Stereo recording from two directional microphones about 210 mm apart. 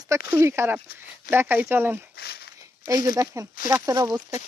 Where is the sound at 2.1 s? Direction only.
50° left (ahead or behind).